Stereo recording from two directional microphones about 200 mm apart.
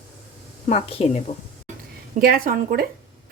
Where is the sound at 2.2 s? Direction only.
45° right (ahead or behind).